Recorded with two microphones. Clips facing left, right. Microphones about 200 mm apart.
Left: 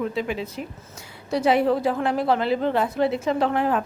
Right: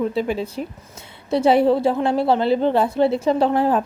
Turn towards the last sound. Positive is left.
turn(degrees=-30)  # may be behind; listen again after turning